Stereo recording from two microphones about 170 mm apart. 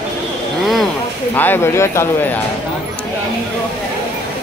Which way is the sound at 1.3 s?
10° left (ahead or behind).